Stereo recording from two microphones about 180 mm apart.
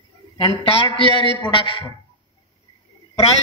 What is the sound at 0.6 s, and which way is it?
A man's voice, 30° left (ahead or behind).